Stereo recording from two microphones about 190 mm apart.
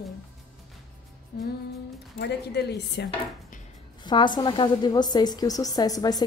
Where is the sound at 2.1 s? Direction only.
60° left (ahead or behind).